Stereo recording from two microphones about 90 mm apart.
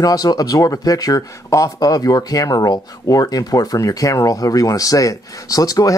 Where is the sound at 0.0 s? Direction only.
45° left (ahead or behind).